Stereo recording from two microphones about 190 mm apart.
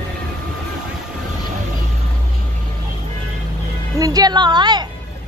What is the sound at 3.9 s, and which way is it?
Speech, 20° right (ahead or behind).